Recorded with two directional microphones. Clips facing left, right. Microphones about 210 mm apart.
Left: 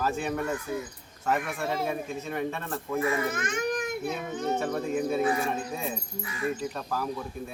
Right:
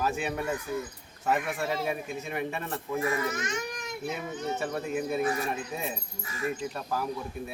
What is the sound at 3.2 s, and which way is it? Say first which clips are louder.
Speech: left 3 dB; 55° left (ahead or behind).